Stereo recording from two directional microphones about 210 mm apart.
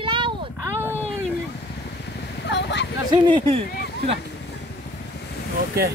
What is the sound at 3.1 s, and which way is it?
Speech, 20° right (ahead or behind).